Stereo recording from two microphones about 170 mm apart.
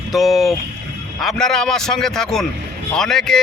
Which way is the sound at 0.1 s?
Centre (ahead or behind).